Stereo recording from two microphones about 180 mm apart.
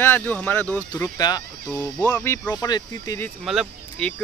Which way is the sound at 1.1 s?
20° left (ahead or behind).